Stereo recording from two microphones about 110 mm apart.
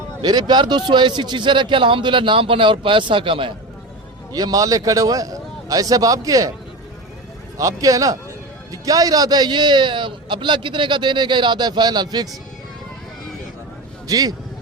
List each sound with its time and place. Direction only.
0.2 s a man's voice: 40° right (ahead or behind)
4.3 s a man's voice: 35° right (ahead or behind)
7.6 s a man's voice: 30° right (ahead or behind)
14.1 s a man's voice: 35° right (ahead or behind)